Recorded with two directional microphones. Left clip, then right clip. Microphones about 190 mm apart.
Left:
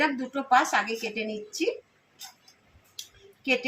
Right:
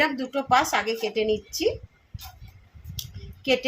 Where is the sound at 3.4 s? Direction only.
35° right (ahead or behind).